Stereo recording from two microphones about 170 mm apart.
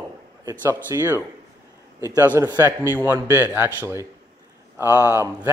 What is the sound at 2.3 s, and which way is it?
A man's voice, 15° right (ahead or behind).